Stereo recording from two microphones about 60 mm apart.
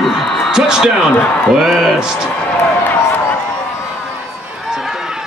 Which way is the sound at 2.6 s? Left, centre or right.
Left.